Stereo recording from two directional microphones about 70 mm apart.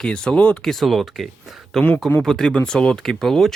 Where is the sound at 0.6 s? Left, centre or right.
Centre.